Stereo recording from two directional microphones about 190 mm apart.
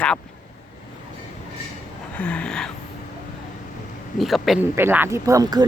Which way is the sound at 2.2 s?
5° left (ahead or behind).